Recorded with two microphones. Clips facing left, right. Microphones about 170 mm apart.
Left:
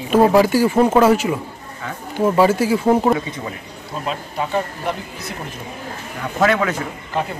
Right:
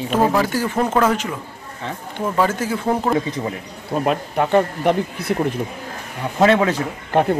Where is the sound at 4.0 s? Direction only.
55° right (ahead or behind).